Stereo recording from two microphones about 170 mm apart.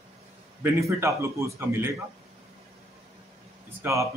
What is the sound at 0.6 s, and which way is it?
A man's voice, 15° right (ahead or behind).